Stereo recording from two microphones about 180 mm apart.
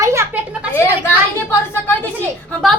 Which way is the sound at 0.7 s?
10° left (ahead or behind).